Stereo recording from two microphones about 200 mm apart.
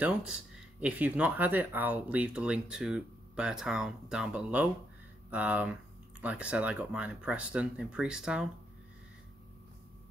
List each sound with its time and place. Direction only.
0.0 s speech: 5° right (ahead or behind)